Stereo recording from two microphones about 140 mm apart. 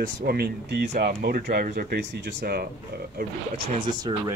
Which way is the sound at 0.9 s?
90° right.